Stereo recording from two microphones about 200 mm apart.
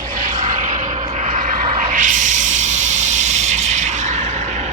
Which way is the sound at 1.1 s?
40° right (ahead or behind).